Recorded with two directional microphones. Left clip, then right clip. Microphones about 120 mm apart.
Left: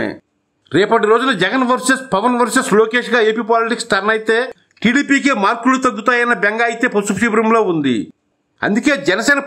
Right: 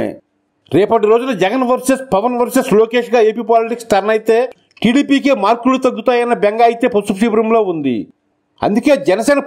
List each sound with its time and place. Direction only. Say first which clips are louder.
0.7 s a man's voice: right 1 dB; 25° right (ahead or behind)